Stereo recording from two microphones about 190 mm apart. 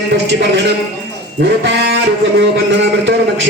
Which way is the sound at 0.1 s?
65° right (ahead or behind).